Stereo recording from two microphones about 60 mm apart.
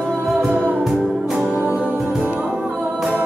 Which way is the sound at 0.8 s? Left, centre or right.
Centre.